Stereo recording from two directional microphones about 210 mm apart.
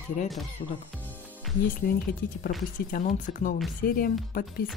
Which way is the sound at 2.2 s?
40° left (ahead or behind).